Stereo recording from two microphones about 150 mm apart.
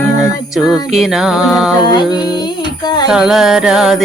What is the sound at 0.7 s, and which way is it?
Music, centre (ahead or behind).